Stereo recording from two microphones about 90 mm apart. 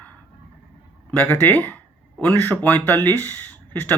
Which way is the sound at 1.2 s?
20° left (ahead or behind).